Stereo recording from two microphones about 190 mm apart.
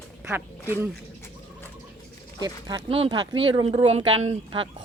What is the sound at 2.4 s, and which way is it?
Speech, 20° right (ahead or behind).